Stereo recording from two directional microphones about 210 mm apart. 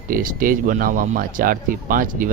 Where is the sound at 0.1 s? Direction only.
40° right (ahead or behind).